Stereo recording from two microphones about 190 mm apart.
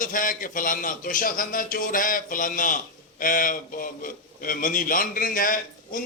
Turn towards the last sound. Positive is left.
turn(degrees=45)  # may be behind; listen again after turning